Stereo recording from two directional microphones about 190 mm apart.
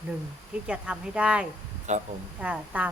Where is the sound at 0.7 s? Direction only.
5° right (ahead or behind).